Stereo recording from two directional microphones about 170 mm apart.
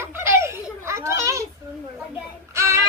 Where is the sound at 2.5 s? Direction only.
15° right (ahead or behind).